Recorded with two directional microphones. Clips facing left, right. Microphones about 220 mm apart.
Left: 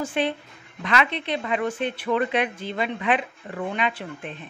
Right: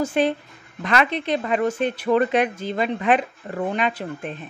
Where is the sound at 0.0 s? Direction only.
40° right (ahead or behind).